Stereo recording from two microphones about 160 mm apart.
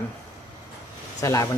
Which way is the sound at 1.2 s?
20° left (ahead or behind).